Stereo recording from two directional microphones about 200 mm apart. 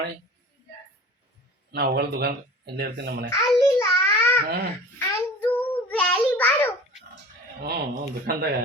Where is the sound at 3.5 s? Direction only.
15° left (ahead or behind).